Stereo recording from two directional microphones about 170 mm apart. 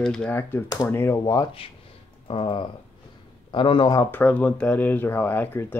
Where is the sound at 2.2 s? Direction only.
30° left (ahead or behind).